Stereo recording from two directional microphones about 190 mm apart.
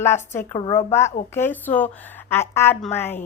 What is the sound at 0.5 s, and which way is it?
Speech, 25° left (ahead or behind).